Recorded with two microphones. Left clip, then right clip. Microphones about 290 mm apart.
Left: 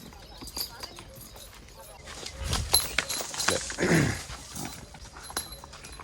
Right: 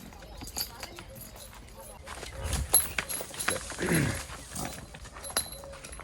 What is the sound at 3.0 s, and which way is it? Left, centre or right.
Clip-clop, left.